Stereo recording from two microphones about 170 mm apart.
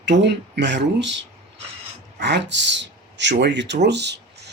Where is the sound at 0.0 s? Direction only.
90° right.